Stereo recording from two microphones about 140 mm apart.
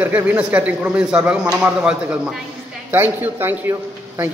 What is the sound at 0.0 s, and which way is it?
A man's voice, 10° right (ahead or behind).